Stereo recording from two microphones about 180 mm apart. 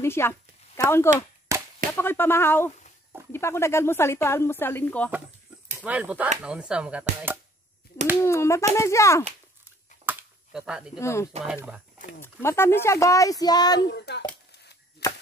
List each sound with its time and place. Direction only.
0.0 s speech: 15° left (ahead or behind)
1.5 s a sound: 15° right (ahead or behind)
2.0 s speech: 10° left (ahead or behind)
5.8 s speech: 10° right (ahead or behind)
8.2 s speech: 15° left (ahead or behind)
10.0 s a sound: 5° right (ahead or behind)
11.0 s speech: 15° left (ahead or behind)
11.4 s speech: 5° right (ahead or behind)
12.2 s speech: 15° left (ahead or behind)
13.9 s a child's voice: 70° left (ahead or behind)
15.0 s a sound: 15° left (ahead or behind)